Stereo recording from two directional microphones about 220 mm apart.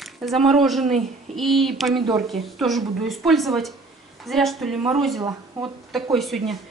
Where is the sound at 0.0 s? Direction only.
Centre (ahead or behind).